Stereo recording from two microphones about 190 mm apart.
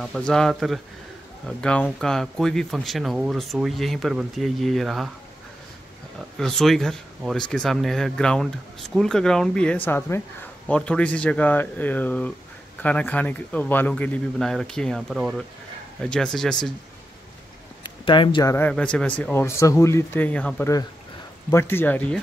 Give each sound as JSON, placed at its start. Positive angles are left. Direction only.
{"t": 0.0, "sound": "speech", "side_deg": 5}
{"t": 6.3, "sound": "speech", "side_deg": 0}
{"t": 17.8, "sound": "a man's voice", "side_deg": 25}
{"t": 18.7, "sound": "speech", "side_deg": 5}